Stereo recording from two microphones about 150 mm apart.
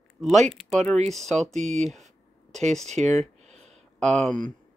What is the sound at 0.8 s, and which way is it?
Speech, 50° right (ahead or behind).